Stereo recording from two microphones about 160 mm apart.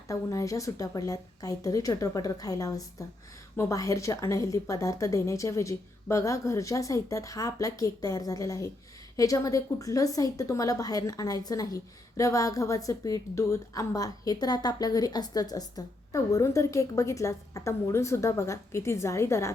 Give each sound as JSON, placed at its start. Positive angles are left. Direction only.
{"t": 0.1, "sound": "a woman's voice", "side_deg": 20}